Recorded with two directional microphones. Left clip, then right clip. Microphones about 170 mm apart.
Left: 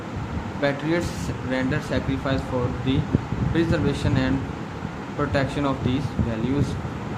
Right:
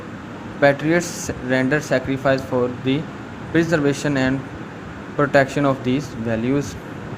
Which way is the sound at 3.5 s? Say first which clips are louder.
Right 6 dB; 35° right (ahead or behind).